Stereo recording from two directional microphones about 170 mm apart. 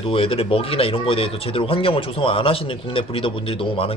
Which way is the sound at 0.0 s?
35° left (ahead or behind).